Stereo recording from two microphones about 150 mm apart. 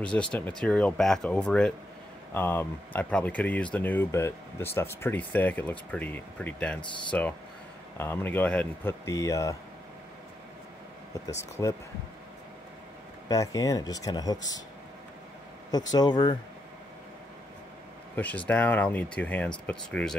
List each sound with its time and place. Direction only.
0.0 s speech: 5° left (ahead or behind)
9.0 s speech: 20° left (ahead or behind)
11.1 s speech: 20° left (ahead or behind)
13.3 s speech: 25° left (ahead or behind)
15.7 s speech: 25° left (ahead or behind)
18.1 s speech: 10° left (ahead or behind)